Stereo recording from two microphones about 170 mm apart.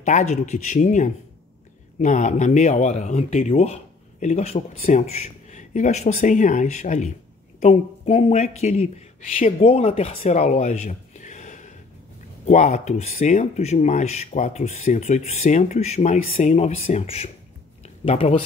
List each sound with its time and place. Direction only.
0.0 s a man's voice: 40° left (ahead or behind)
9.6 s speech: 35° left (ahead or behind)
17.8 s a sound: 40° left (ahead or behind)